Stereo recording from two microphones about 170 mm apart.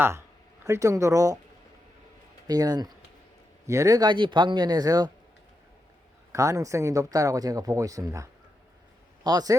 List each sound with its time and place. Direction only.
0.6 s speech: 20° right (ahead or behind)
2.5 s speech: 25° right (ahead or behind)
6.3 s speech: 20° right (ahead or behind)